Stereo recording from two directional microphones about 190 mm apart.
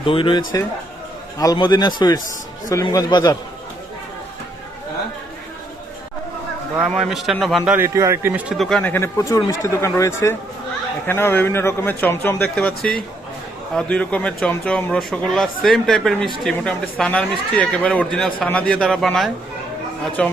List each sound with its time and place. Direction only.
0.0 s a man's voice: 25° left (ahead or behind)
6.7 s a man's voice: centre (ahead or behind)